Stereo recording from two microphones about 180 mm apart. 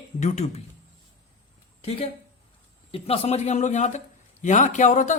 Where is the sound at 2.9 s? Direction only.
35° left (ahead or behind).